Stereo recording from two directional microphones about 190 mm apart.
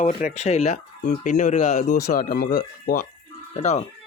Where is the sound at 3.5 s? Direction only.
35° left (ahead or behind).